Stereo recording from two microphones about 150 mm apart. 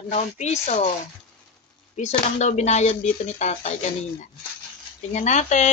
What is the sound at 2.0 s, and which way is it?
Speech, 50° left (ahead or behind).